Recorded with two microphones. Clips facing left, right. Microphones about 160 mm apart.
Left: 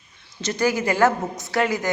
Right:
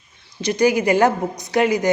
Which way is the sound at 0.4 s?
15° right (ahead or behind).